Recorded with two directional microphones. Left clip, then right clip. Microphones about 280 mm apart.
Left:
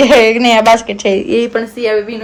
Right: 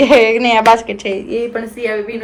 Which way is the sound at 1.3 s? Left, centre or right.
Left.